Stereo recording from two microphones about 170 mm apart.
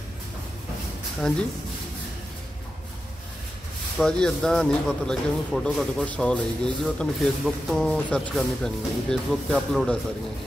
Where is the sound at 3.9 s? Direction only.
5° left (ahead or behind).